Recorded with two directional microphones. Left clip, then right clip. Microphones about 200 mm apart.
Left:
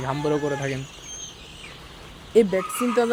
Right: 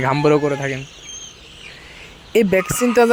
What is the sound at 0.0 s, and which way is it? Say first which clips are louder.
Speech: right 9 dB; 25° right (ahead or behind).